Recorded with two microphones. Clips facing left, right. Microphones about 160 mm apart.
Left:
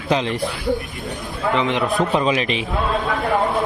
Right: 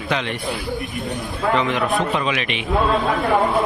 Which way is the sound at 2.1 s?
30° left (ahead or behind).